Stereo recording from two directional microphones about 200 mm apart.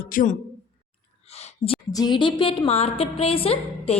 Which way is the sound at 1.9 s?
20° left (ahead or behind).